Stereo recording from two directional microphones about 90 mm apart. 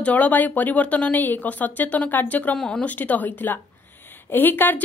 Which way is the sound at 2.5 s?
5° left (ahead or behind).